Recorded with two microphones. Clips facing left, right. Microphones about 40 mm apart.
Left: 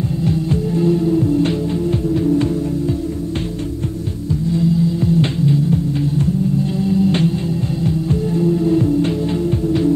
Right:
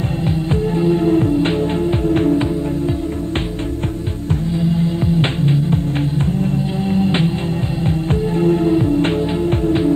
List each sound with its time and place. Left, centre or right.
0.5 s music: right
1.0 s music: right
5.0 s music: right
6.8 s music: right
7.8 s music: right
8.7 s music: right